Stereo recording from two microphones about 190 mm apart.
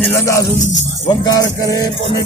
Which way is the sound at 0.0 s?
15° left (ahead or behind).